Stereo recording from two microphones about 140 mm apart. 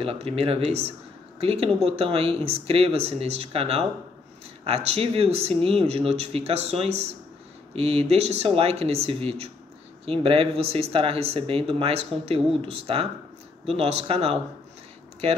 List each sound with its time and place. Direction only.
0.0 s speech: 45° right (ahead or behind)